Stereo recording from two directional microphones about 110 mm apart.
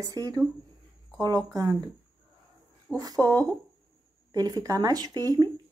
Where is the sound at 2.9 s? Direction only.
35° right (ahead or behind).